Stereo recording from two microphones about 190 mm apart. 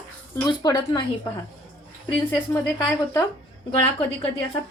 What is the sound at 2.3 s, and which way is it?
Speech, 10° left (ahead or behind).